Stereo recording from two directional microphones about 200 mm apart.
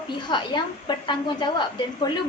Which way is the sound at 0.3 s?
25° left (ahead or behind).